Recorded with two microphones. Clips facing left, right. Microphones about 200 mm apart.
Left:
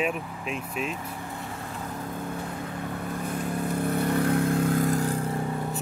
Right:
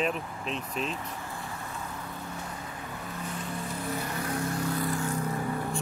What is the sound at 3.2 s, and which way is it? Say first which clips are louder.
Vehicle: left 7 dB; 55° left (ahead or behind).